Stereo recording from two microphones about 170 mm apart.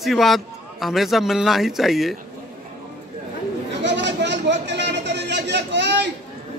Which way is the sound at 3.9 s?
90° right.